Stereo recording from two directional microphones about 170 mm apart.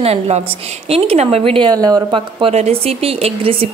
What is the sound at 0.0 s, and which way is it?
A woman's voice, 40° right (ahead or behind).